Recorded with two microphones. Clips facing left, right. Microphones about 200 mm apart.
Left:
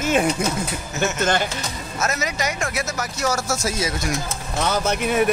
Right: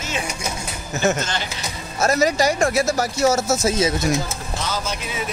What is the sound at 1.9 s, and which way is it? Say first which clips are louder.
Speech: right 8 dB; 35° right (ahead or behind).